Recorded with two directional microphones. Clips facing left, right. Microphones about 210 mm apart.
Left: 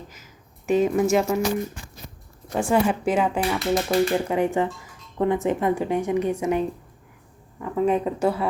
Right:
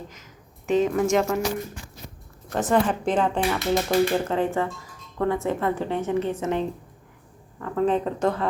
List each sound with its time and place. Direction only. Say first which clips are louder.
0.7 s speech: left 1 dB; 10° left (ahead or behind)
2.5 s speech: left 1 dB; 10° left (ahead or behind)
4.4 s speech: left 2 dB; 15° left (ahead or behind)